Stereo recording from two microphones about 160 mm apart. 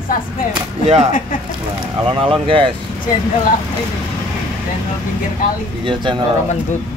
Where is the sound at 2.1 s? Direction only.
35° right (ahead or behind).